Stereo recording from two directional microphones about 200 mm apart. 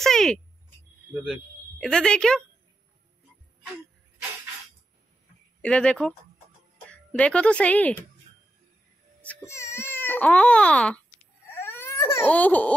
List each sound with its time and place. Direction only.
0.0 s a sound: centre (ahead or behind)
1.1 s speech: centre (ahead or behind)
5.6 s speech: 5° left (ahead or behind)
9.2 s speech: 10° left (ahead or behind)
11.5 s baby cry: 10° left (ahead or behind)